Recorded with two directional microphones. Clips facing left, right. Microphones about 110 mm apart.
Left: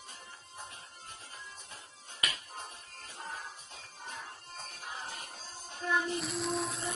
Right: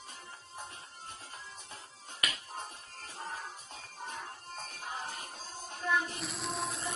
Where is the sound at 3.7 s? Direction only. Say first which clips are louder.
Right 3 dB; 45° right (ahead or behind).